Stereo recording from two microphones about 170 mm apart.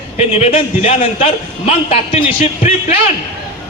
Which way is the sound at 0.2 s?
35° left (ahead or behind).